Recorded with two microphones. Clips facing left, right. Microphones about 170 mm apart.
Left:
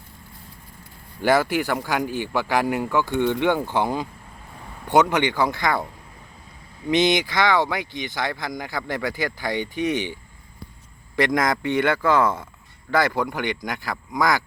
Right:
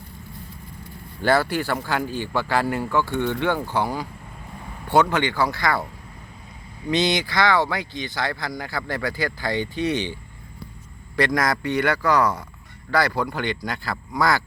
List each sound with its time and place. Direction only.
1.2 s speech: 15° left (ahead or behind)
6.9 s speech: 20° left (ahead or behind)
11.2 s speech: 20° left (ahead or behind)